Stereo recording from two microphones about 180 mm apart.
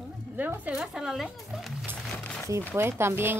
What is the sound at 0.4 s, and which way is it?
Speech, 10° right (ahead or behind).